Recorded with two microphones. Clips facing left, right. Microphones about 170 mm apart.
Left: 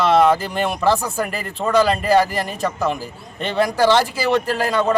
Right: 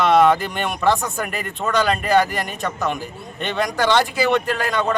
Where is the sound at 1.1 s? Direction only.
35° left (ahead or behind).